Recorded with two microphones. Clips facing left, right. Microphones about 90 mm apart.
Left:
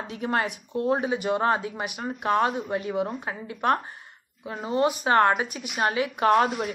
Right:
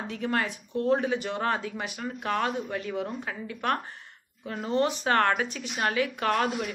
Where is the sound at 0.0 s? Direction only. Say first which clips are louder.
Left 2 dB; 20° left (ahead or behind).